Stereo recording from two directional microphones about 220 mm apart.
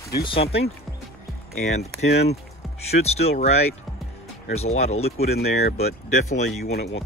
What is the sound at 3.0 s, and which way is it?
Speech, 30° left (ahead or behind).